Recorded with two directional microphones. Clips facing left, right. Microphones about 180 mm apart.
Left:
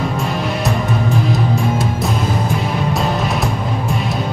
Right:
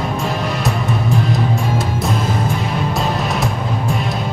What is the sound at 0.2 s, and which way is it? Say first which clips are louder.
Music: left 1 dB; centre (ahead or behind).